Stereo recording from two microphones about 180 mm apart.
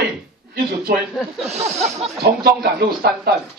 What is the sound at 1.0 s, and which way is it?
Speech, 5° right (ahead or behind).